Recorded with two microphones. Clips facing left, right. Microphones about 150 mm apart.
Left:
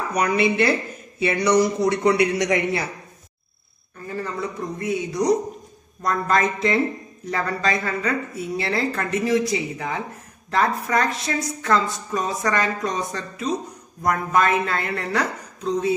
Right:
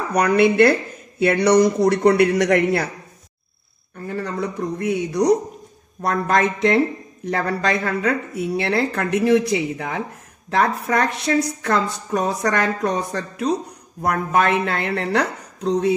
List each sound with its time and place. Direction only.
0.1 s a woman's voice: 60° right (ahead or behind)
3.9 s a woman's voice: 60° right (ahead or behind)